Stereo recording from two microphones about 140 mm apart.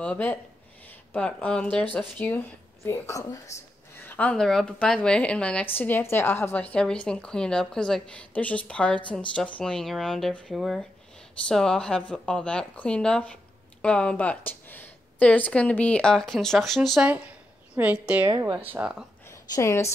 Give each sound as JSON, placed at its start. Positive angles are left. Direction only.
{"t": 0.0, "sound": "speech", "side_deg": 10}
{"t": 17.7, "sound": "a woman's voice", "side_deg": -10}
{"t": 18.3, "sound": "speech", "side_deg": -25}
{"t": 18.7, "sound": "a woman's voice", "side_deg": -10}
{"t": 19.2, "sound": "a sound", "side_deg": 20}